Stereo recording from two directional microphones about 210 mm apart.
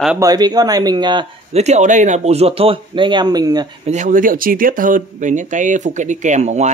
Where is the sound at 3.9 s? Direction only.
35° right (ahead or behind).